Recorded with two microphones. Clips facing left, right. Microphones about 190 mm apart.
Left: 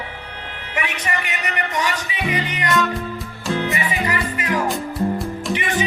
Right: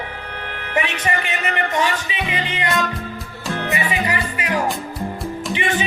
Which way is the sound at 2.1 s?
25° right (ahead or behind).